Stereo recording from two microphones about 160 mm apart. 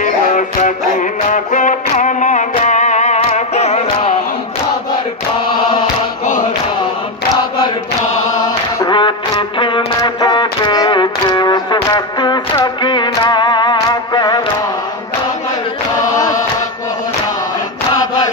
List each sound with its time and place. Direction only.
0.0 s music: 50° left (ahead or behind)
8.7 s music: 30° left (ahead or behind)
16.2 s chant: 20° left (ahead or behind)